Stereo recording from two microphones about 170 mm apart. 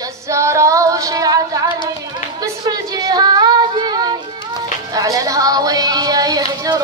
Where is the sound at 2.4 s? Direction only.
20° right (ahead or behind).